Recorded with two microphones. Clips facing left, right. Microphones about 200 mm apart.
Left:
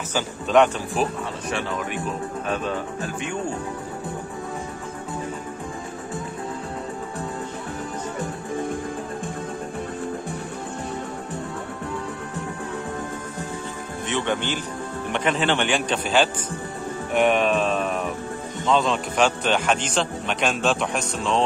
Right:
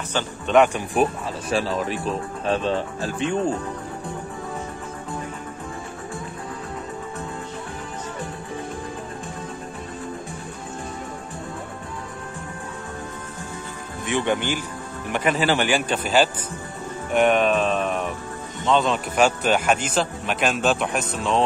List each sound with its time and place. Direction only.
0.1 s speech: centre (ahead or behind)
1.5 s speech: 30° right (ahead or behind)
14.0 s speech: 10° right (ahead or behind)
17.1 s music: centre (ahead or behind)
18.7 s speech: centre (ahead or behind)